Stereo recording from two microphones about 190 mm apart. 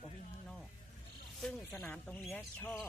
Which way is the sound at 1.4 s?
Centre (ahead or behind).